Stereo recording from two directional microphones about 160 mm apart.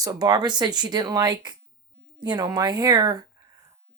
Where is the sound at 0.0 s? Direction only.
25° right (ahead or behind).